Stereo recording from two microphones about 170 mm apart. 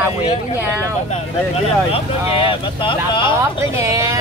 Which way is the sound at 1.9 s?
35° left (ahead or behind).